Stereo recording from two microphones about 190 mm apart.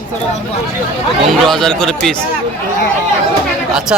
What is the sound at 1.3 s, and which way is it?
Speech, centre (ahead or behind).